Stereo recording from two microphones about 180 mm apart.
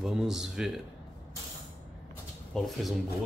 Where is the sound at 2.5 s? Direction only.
5° left (ahead or behind).